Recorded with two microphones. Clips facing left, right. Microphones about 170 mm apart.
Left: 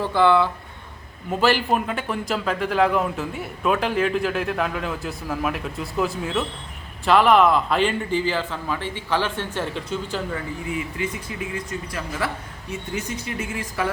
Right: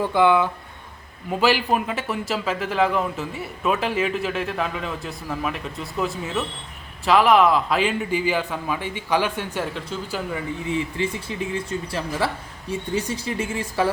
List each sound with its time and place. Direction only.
0.0 s a man's voice: 15° right (ahead or behind)
9.7 s a man's voice: centre (ahead or behind)
10.7 s speech: 30° right (ahead or behind)